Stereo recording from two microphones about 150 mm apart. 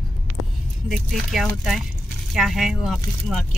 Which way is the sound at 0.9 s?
Centre (ahead or behind).